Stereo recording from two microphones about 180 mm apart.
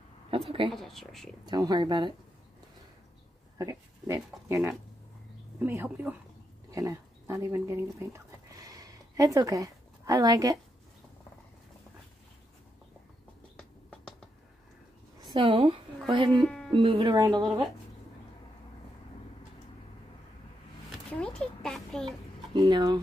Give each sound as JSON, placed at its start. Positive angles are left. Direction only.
{"t": 0.3, "sound": "speech", "side_deg": -30}
{"t": 0.7, "sound": "speech", "side_deg": 0}
{"t": 1.4, "sound": "speech", "side_deg": -20}
{"t": 3.5, "sound": "speech", "side_deg": -15}
{"t": 8.5, "sound": "a sound", "side_deg": -20}
{"t": 13.6, "sound": "a sound", "side_deg": 5}
{"t": 15.1, "sound": "a woman's voice", "side_deg": -25}
{"t": 16.4, "sound": "a sound", "side_deg": 5}
{"t": 16.7, "sound": "speech", "side_deg": -30}
{"t": 21.6, "sound": "speech", "side_deg": 0}
{"t": 22.5, "sound": "speech", "side_deg": -25}